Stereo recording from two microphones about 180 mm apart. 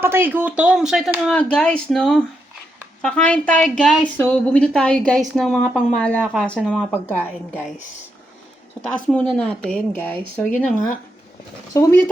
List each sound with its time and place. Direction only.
0.0 s speech: 10° right (ahead or behind); by 7.6 s 10° left (ahead or behind)
9.4 s speech: 5° left (ahead or behind)
10.5 s speech: 45° left (ahead or behind)
11.7 s speech: 20° left (ahead or behind)